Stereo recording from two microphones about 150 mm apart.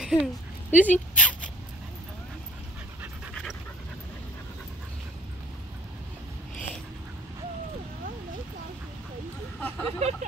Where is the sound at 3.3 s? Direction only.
5° left (ahead or behind).